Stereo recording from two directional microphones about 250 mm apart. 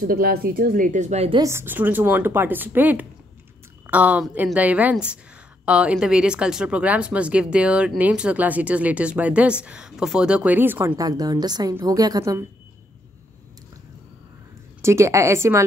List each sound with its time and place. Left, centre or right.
0.0 s a woman's voice: right
1.4 s a woman's voice: centre
14.8 s speech: centre